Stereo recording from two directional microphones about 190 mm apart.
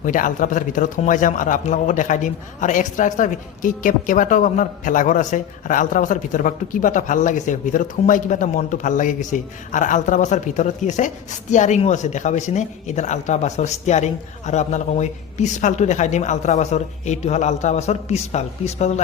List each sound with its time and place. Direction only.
0.0 s a man's voice: 45° left (ahead or behind)